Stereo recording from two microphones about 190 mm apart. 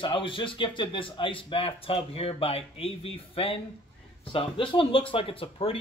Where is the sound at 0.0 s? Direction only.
25° left (ahead or behind).